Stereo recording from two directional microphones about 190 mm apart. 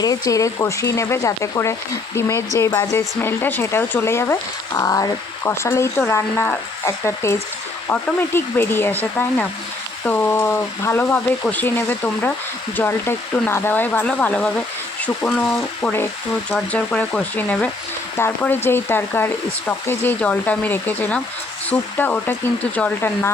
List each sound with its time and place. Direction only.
0.0 s speech: 20° left (ahead or behind)